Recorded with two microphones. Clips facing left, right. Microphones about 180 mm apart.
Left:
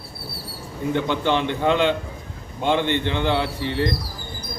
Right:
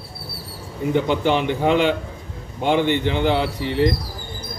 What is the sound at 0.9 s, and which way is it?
Speech, 10° right (ahead or behind).